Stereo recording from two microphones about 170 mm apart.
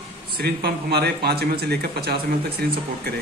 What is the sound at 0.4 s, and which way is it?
Speech, 70° right (ahead or behind).